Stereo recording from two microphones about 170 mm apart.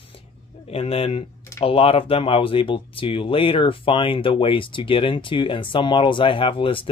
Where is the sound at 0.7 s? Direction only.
35° left (ahead or behind).